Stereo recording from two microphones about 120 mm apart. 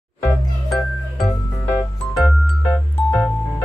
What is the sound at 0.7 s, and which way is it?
Music, centre (ahead or behind).